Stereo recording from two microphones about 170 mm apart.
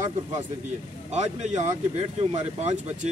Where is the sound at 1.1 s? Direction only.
40° right (ahead or behind).